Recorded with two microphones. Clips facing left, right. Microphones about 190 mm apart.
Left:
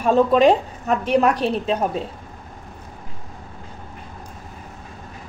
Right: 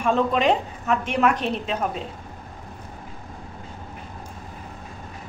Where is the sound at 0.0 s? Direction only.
40° left (ahead or behind).